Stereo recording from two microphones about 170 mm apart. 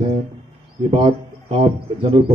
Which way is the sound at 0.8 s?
40° right (ahead or behind).